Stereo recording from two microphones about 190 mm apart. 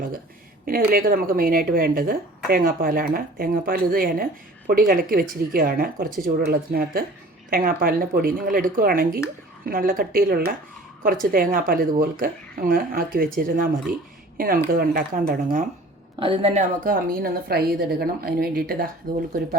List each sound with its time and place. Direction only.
0.6 s speech: 50° right (ahead or behind)
16.2 s a woman's voice: 30° right (ahead or behind)
16.8 s speech: 50° right (ahead or behind)